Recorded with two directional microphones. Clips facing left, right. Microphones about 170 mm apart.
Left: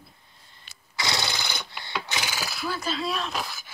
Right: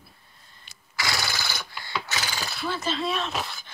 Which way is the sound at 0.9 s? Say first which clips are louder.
Left 1 dB; 20° left (ahead or behind).